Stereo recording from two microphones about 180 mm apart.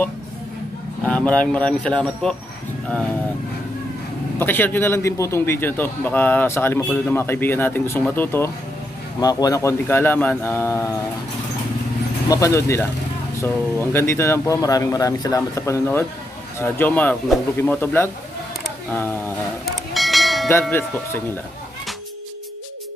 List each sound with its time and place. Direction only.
1.0 s a man's voice: 5° left (ahead or behind)
4.4 s a man's voice: 10° left (ahead or behind)
12.3 s a man's voice: 15° left (ahead or behind)
19.6 s church bell: centre (ahead or behind)